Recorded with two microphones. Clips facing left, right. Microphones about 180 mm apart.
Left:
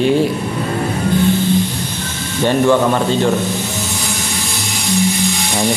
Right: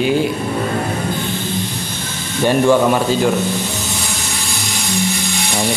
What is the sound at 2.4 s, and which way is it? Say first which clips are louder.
Speech: even; 10° right (ahead or behind).